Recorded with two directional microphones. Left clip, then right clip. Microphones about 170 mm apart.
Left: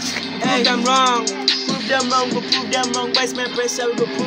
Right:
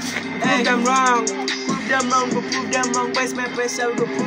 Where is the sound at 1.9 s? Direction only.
20° left (ahead or behind).